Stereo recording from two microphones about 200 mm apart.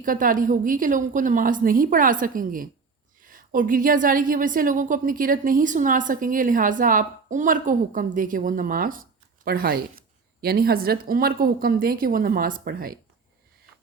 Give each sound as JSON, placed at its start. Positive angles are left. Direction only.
{"t": 0.0, "sound": "a woman's voice", "side_deg": -45}